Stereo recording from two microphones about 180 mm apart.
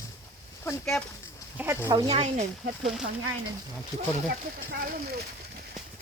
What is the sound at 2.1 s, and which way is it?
Speech, 35° right (ahead or behind).